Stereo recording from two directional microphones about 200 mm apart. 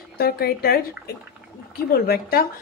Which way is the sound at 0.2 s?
50° left (ahead or behind).